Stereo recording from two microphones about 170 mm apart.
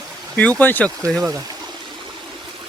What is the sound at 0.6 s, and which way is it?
Speech, 10° left (ahead or behind).